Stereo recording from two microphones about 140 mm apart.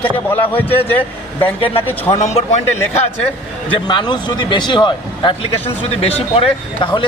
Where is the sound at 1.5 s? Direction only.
40° left (ahead or behind).